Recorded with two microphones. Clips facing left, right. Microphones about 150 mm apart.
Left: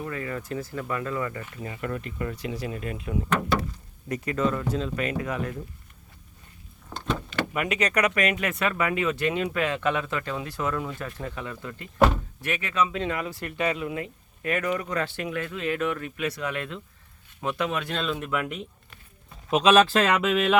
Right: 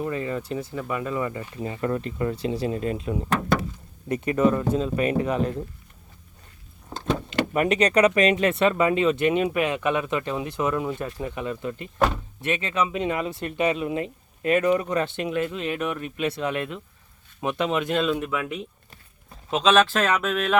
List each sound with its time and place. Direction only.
0.0 s speech: 20° right (ahead or behind)
4.6 s speech: 30° right (ahead or behind)
7.5 s speech: 35° right (ahead or behind); by 18.4 s 5° right (ahead or behind)
19.5 s speech: 10° left (ahead or behind)